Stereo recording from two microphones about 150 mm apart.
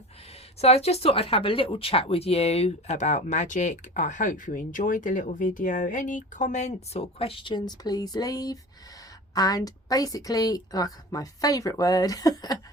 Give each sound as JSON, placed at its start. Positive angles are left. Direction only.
{"t": 0.6, "sound": "a woman's voice", "side_deg": 45}